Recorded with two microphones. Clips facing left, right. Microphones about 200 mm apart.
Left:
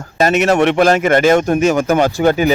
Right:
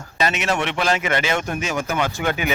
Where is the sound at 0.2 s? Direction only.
45° left (ahead or behind).